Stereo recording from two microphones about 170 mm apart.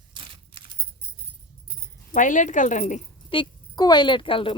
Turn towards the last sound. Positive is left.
turn(degrees=30)  # may be behind; listen again after turning